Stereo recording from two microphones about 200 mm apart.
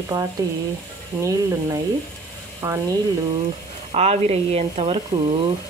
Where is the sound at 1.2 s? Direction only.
15° right (ahead or behind).